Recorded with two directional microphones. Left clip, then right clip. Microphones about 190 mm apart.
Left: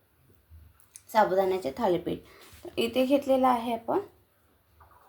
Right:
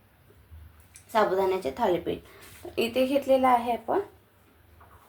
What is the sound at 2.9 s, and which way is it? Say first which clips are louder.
Speech: even; 40° left (ahead or behind).